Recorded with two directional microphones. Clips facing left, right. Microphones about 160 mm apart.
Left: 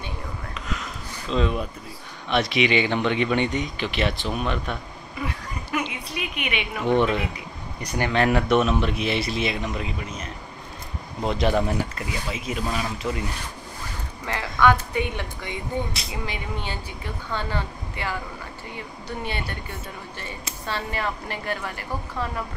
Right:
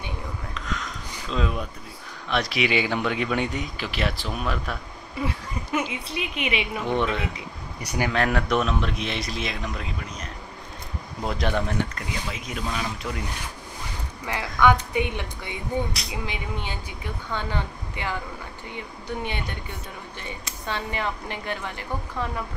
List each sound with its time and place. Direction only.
0.6 s a sound: 5° left (ahead or behind)
2.2 s speech: centre (ahead or behind)
5.2 s a sound: 25° right (ahead or behind)
6.0 s a woman's voice: 25° right (ahead or behind)
6.8 s speech: centre (ahead or behind)
14.2 s speech: 10° right (ahead or behind)
20.6 s speech: 15° right (ahead or behind)